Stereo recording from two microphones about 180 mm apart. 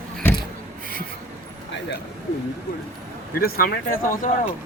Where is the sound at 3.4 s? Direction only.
55° left (ahead or behind).